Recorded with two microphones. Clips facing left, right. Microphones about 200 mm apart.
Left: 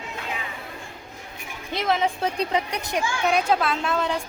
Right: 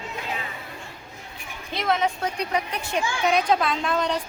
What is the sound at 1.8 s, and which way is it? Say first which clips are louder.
A woman's voice: left 1 dB; 25° left (ahead or behind).